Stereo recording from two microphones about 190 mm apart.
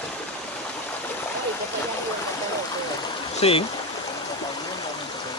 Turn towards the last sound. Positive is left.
turn(degrees=30)  # may be behind; listen again after turning